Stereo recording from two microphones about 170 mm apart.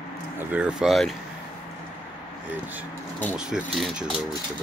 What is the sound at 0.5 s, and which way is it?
Speech, 5° right (ahead or behind).